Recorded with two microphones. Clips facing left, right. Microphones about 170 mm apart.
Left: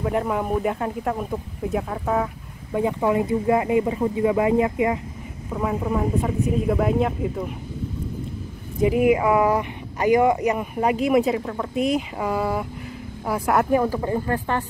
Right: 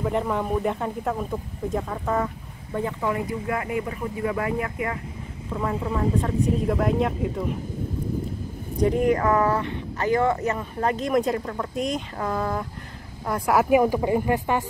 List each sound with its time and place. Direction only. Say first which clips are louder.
0.0 s speech: left 1 dB; 5° left (ahead or behind)
2.7 s speech: left 5 dB; 20° left (ahead or behind)
5.5 s speech: left 3 dB; 10° left (ahead or behind)
8.7 s a woman's voice: left 3 dB; 5° left (ahead or behind); by 14.6 s 10° right (ahead or behind)